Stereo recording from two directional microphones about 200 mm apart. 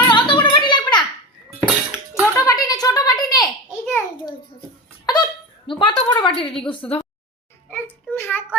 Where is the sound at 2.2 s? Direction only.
20° left (ahead or behind).